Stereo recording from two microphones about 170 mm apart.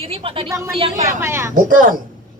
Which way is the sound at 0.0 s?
35° right (ahead or behind).